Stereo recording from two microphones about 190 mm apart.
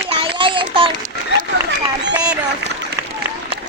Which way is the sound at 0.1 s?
25° right (ahead or behind).